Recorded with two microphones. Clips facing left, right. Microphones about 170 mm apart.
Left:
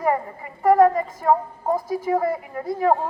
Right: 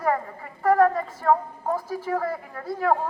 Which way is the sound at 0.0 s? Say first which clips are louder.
Left 3 dB; 15° left (ahead or behind).